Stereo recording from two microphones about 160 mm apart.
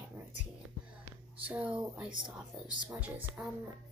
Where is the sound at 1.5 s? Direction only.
10° right (ahead or behind).